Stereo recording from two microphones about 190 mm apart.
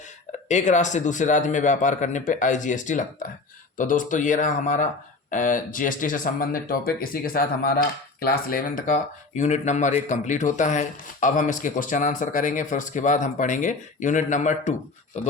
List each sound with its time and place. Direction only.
0.4 s a man's voice: 40° left (ahead or behind)